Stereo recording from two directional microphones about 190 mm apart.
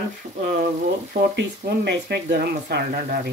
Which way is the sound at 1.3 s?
60° right (ahead or behind).